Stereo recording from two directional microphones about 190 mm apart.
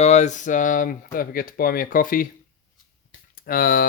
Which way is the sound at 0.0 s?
35° left (ahead or behind).